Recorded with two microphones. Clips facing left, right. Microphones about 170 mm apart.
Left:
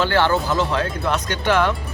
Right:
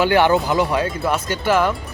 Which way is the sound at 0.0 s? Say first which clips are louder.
Right 3 dB; 15° right (ahead or behind).